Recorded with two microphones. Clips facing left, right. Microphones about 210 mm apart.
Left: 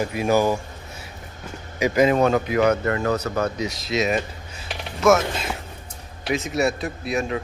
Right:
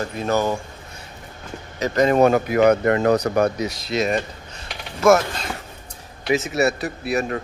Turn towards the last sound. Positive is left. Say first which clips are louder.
# right 2 dB
turn(degrees=-5)  # may be behind; listen again after turning